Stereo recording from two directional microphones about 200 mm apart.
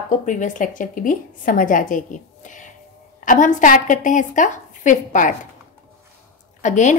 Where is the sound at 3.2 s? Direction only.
40° left (ahead or behind).